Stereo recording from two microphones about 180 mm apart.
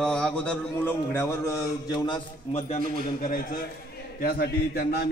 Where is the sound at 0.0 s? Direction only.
5° left (ahead or behind); by 2.2 s 25° left (ahead or behind).